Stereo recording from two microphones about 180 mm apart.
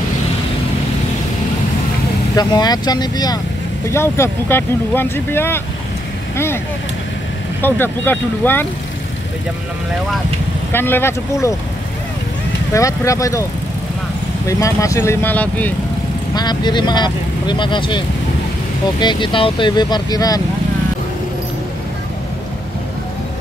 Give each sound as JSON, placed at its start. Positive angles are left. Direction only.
{"t": 2.3, "sound": "speech", "side_deg": 20}
{"t": 7.6, "sound": "speech", "side_deg": 10}
{"t": 10.7, "sound": "speech", "side_deg": 10}
{"t": 12.7, "sound": "speech", "side_deg": 15}
{"t": 14.5, "sound": "speech", "side_deg": 15}
{"t": 16.3, "sound": "speech", "side_deg": 25}